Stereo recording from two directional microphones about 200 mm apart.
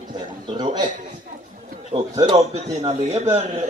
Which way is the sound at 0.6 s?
20° right (ahead or behind).